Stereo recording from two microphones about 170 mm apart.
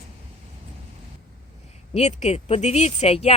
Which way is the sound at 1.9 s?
40° left (ahead or behind).